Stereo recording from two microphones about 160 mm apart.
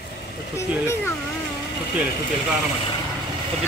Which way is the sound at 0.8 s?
15° left (ahead or behind).